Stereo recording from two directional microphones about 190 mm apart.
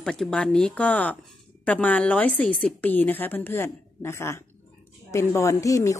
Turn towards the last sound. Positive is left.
turn(degrees=15)  # may be behind; listen again after turning